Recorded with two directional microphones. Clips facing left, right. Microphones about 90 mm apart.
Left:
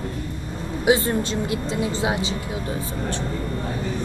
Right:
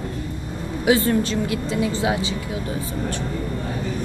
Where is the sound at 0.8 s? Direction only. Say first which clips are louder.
Right 1 dB; 25° left (ahead or behind).